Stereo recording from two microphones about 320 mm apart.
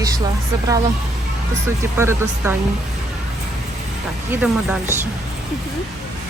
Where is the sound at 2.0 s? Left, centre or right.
Centre.